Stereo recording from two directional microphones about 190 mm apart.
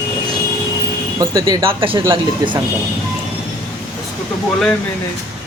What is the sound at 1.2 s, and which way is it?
Speech, 20° right (ahead or behind).